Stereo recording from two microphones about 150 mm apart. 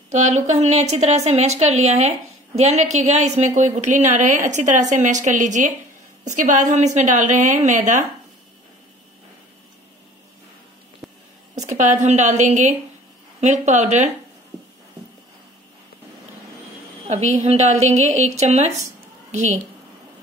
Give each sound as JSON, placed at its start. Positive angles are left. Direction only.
{"t": 0.1, "sound": "speech", "side_deg": -50}
{"t": 11.0, "sound": "a sound", "side_deg": 0}
{"t": 11.6, "sound": "speech", "side_deg": -50}
{"t": 17.1, "sound": "speech", "side_deg": -50}